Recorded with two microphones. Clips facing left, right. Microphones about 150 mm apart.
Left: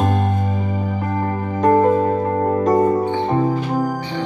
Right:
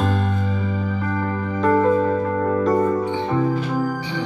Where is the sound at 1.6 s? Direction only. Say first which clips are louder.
Left 3 dB; 40° left (ahead or behind).